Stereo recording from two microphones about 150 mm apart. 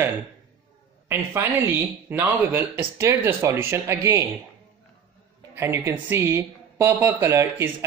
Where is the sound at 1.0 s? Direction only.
15° right (ahead or behind).